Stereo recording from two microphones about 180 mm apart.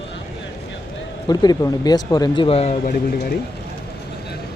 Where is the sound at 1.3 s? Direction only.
20° left (ahead or behind).